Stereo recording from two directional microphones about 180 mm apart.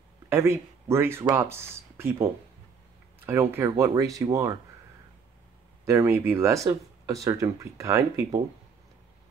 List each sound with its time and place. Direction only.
0.3 s speech: 15° right (ahead or behind)
3.3 s speech: 15° right (ahead or behind)
5.9 s speech: 15° right (ahead or behind)